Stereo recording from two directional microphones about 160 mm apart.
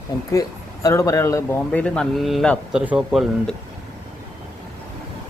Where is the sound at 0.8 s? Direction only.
20° left (ahead or behind).